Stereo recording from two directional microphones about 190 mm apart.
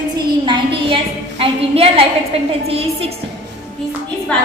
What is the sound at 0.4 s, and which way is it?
A woman's voice, 25° right (ahead or behind).